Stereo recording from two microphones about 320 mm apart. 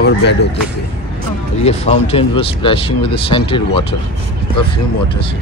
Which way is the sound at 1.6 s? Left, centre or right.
Centre.